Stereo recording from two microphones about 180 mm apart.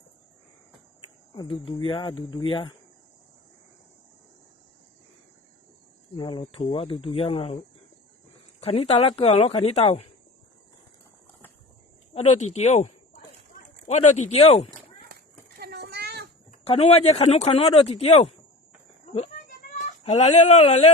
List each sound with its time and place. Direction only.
1.4 s speech: 25° left (ahead or behind)
6.1 s speech: 30° left (ahead or behind)
8.6 s speech: 30° left (ahead or behind)
12.1 s speech: 35° left (ahead or behind)
15.1 s a sound: 60° right (ahead or behind)
16.5 s speech: 35° left (ahead or behind)
19.1 s a sound: 35° left (ahead or behind)
19.8 s speech: 40° left (ahead or behind)